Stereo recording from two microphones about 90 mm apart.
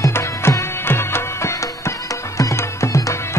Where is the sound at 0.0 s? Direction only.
30° left (ahead or behind).